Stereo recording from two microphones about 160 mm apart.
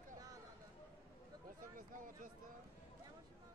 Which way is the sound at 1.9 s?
55° right (ahead or behind).